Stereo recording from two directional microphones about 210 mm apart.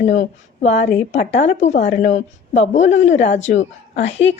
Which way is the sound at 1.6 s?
35° left (ahead or behind).